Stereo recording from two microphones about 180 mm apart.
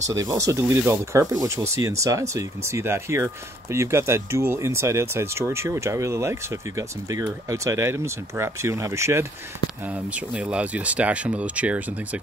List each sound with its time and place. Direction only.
0.1 s speech: 20° right (ahead or behind)
10.3 s speech: 5° right (ahead or behind)